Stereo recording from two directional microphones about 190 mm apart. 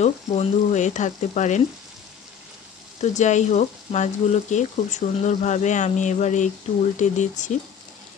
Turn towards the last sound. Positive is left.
turn(degrees=40)  # may be behind; listen again after turning